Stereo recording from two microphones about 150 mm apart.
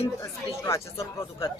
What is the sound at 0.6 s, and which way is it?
Speech, 20° left (ahead or behind).